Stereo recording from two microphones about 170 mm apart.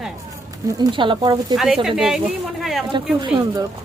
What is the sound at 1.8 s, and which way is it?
Speech, 5° right (ahead or behind).